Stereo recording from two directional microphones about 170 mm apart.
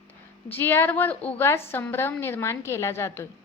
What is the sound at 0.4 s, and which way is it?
A woman's voice, 10° left (ahead or behind).